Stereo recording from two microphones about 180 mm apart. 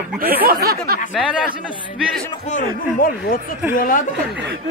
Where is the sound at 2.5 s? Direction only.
45° left (ahead or behind).